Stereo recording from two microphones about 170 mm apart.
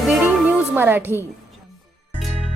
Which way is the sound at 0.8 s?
10° right (ahead or behind).